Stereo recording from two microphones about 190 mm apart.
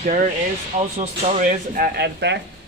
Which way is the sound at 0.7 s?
35° right (ahead or behind).